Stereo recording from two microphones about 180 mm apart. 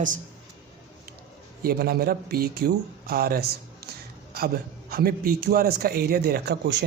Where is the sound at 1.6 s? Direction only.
55° right (ahead or behind).